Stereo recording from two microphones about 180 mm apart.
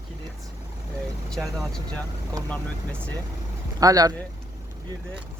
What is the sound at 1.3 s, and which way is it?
Speech, centre (ahead or behind).